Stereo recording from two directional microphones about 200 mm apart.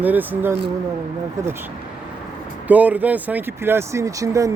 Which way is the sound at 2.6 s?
10° right (ahead or behind).